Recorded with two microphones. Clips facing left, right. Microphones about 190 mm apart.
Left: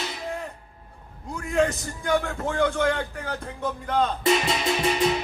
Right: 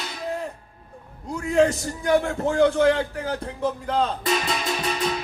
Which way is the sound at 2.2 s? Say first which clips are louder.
Right 5 dB; 30° right (ahead or behind).